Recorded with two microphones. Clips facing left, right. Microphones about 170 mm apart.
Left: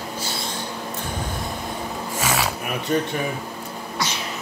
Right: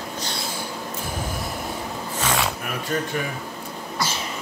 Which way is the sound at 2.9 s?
15° left (ahead or behind).